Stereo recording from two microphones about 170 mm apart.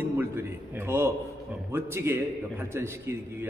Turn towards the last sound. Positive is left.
turn(degrees=-15)  # may be behind; listen again after turning